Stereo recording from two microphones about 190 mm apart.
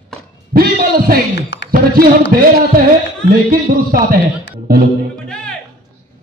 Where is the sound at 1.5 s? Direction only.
75° left (ahead or behind).